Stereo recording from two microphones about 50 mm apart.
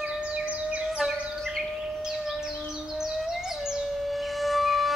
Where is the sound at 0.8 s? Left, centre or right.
Centre.